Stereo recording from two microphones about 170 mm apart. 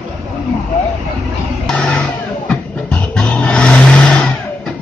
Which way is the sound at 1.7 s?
5° left (ahead or behind).